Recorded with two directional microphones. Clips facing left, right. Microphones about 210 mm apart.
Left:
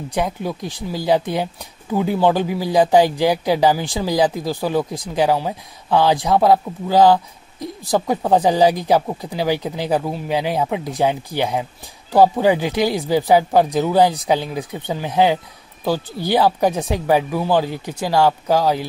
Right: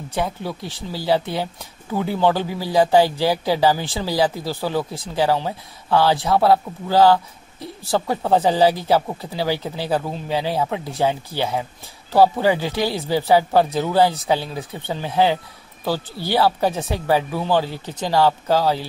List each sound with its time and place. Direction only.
0.1 s speech: 15° left (ahead or behind)